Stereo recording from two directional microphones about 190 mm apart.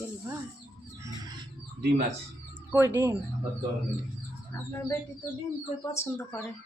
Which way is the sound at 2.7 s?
15° right (ahead or behind).